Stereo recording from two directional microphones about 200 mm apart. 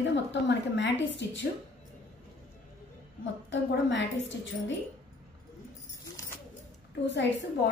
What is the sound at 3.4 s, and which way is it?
A woman's voice, 65° left (ahead or behind).